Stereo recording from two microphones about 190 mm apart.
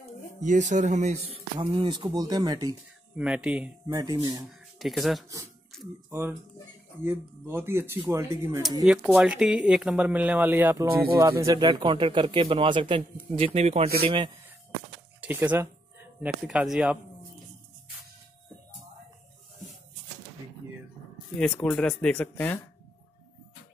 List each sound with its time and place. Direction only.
0.4 s speech: 40° right (ahead or behind); by 2.7 s 20° right (ahead or behind)
3.2 s speech: 5° right (ahead or behind)
3.8 s speech: 20° right (ahead or behind)
4.5 s speech: centre (ahead or behind)
6.0 s speech: 15° right (ahead or behind); by 14.3 s 30° right (ahead or behind)
15.1 s speech: 10° right (ahead or behind)
21.4 s speech: 5° left (ahead or behind)